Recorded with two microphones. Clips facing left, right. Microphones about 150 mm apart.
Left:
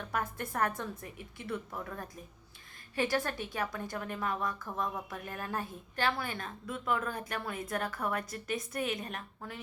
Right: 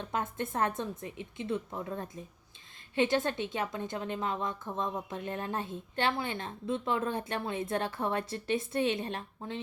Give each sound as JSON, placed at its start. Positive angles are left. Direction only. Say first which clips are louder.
{"t": 0.0, "sound": "a woman's voice", "louder": "right 2 dB", "side_deg": -25}